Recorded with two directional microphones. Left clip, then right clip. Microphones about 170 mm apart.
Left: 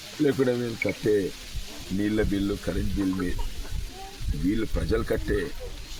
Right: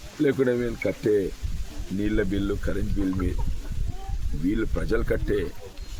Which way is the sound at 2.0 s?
15° right (ahead or behind).